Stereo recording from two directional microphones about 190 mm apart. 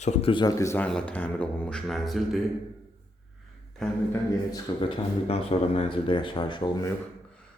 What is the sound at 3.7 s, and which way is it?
Speech, centre (ahead or behind).